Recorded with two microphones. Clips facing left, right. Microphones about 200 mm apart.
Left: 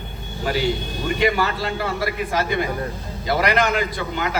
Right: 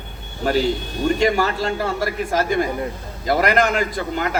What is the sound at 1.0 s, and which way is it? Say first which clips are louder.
A man's voice: right 3 dB; 40° right (ahead or behind).